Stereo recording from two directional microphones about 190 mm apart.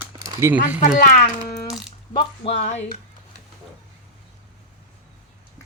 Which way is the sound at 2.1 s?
30° left (ahead or behind).